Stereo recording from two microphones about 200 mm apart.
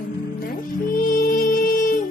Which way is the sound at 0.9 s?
45° left (ahead or behind).